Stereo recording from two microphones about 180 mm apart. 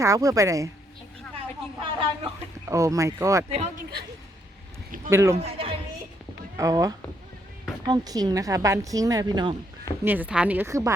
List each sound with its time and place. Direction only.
0.0 s a woman's voice: 20° right (ahead or behind)
1.8 s a sound: 30° right (ahead or behind)
2.6 s a woman's voice: 15° right (ahead or behind)
5.0 s a woman's voice: 15° right (ahead or behind)
5.4 s speech: 30° right (ahead or behind)
6.6 s a woman's voice: 20° right (ahead or behind)
10.0 s a woman's voice: 10° right (ahead or behind)